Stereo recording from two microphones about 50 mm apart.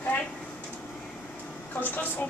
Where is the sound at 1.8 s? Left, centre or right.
Left.